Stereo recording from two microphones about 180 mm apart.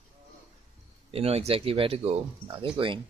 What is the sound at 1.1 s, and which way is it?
Speech, 35° right (ahead or behind).